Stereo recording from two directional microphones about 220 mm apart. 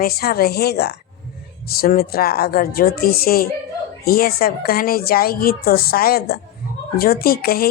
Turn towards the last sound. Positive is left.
turn(degrees=45)  # may be behind; listen again after turning